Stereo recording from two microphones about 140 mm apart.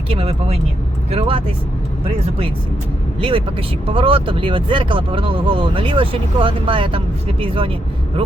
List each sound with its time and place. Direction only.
0.1 s speech: 45° right (ahead or behind)
3.2 s speech: 35° right (ahead or behind)